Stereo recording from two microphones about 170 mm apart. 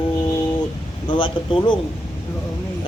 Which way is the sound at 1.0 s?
30° left (ahead or behind).